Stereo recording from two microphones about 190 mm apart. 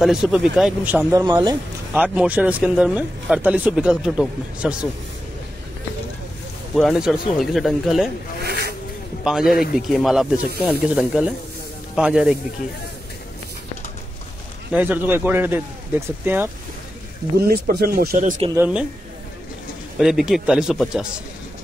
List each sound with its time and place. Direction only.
0.0 s speech: centre (ahead or behind)
1.2 s speech: 20° right (ahead or behind)
2.0 s speech: 5° right (ahead or behind)
6.7 s speech: centre (ahead or behind)
8.5 s zipper: 55° right (ahead or behind)
9.2 s speech: centre (ahead or behind)
14.7 s speech: 10° right (ahead or behind)
17.5 s speech: 55° right (ahead or behind)
18.5 s speech: 10° right (ahead or behind)
20.0 s speech: centre (ahead or behind)